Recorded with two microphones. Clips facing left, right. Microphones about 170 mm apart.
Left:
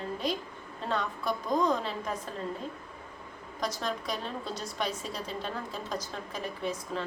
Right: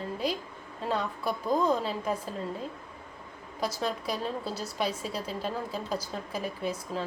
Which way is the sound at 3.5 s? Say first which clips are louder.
Right 2 dB; 5° right (ahead or behind).